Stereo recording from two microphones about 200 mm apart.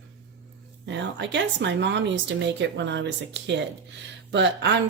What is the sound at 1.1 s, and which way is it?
A woman's voice, 65° right (ahead or behind).